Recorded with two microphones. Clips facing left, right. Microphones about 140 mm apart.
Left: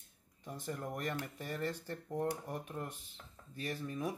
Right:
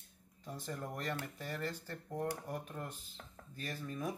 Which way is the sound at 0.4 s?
15° left (ahead or behind).